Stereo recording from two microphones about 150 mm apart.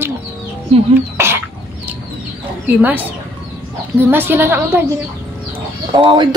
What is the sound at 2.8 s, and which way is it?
A woman's voice, 10° right (ahead or behind).